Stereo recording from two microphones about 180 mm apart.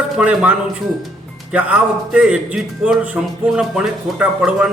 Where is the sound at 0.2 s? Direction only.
5° right (ahead or behind).